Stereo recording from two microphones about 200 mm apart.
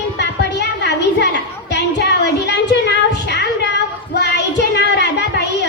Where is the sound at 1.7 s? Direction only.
60° left (ahead or behind).